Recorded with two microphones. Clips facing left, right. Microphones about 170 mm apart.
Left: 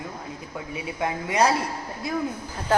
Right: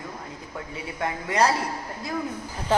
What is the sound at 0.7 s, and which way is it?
Speech, 15° left (ahead or behind).